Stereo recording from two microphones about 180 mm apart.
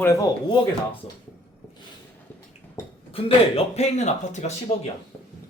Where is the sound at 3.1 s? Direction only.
30° left (ahead or behind).